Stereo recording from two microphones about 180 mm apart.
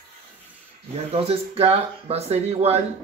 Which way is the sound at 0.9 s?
35° right (ahead or behind).